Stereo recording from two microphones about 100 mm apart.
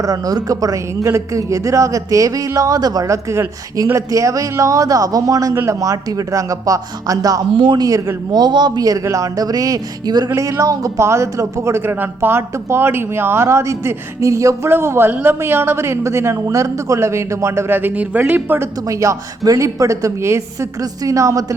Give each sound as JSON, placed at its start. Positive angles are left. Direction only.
{"t": 0.0, "sound": "speech", "side_deg": -35}
{"t": 7.9, "sound": "speech", "side_deg": -35}
{"t": 18.9, "sound": "speech", "side_deg": -30}